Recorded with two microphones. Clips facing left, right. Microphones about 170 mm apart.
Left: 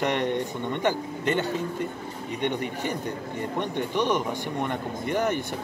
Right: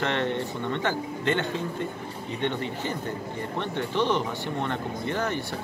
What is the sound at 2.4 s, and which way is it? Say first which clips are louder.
Speech: left 1 dB; 15° left (ahead or behind).